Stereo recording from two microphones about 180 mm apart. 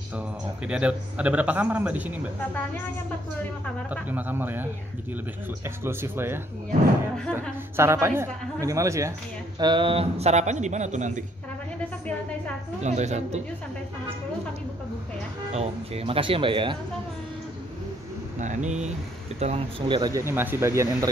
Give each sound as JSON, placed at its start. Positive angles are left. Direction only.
{"t": 0.7, "sound": "a man's voice", "side_deg": -5}
{"t": 3.9, "sound": "a man's voice", "side_deg": -10}
{"t": 5.9, "sound": "a man's voice", "side_deg": -15}
{"t": 7.7, "sound": "a man's voice", "side_deg": -15}
{"t": 12.8, "sound": "a man's voice", "side_deg": -40}
{"t": 15.5, "sound": "speech", "side_deg": -35}
{"t": 18.4, "sound": "a man's voice", "side_deg": -40}
{"t": 19.4, "sound": "speech", "side_deg": -30}